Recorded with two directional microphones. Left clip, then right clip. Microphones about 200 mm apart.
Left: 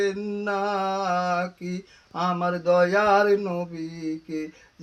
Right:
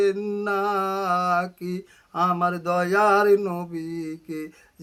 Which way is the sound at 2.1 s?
15° right (ahead or behind).